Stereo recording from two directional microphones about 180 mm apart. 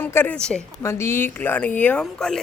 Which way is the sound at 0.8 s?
15° left (ahead or behind).